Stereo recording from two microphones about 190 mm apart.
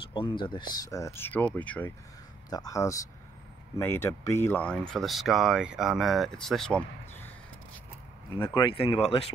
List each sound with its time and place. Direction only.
0.1 s speech: 25° left (ahead or behind); by 1.9 s 5° left (ahead or behind)
2.5 s speech: 20° left (ahead or behind)
8.4 s speech: 15° left (ahead or behind)
8.6 s speech: 25° left (ahead or behind)